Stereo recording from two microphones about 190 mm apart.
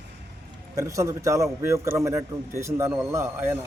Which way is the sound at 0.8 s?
15° right (ahead or behind).